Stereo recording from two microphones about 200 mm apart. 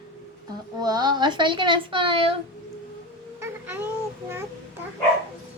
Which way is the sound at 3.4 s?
10° right (ahead or behind).